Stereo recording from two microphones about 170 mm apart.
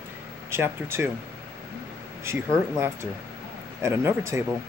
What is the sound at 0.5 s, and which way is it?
Speech, 15° right (ahead or behind).